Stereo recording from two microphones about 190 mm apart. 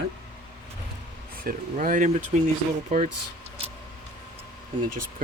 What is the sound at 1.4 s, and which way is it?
Speech, 45° right (ahead or behind).